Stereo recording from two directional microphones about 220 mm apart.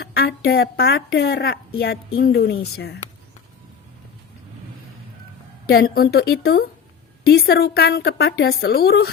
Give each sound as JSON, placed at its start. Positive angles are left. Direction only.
{"t": 0.0, "sound": "a woman's voice", "side_deg": 45}
{"t": 5.6, "sound": "a woman's voice", "side_deg": 45}